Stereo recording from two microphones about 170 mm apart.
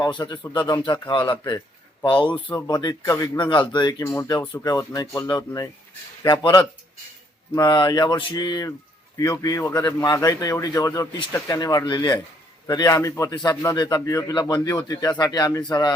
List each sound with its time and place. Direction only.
0.0 s a man's voice: 25° left (ahead or behind)
2.3 s speech: 10° left (ahead or behind)
2.6 s a man's voice: 25° left (ahead or behind)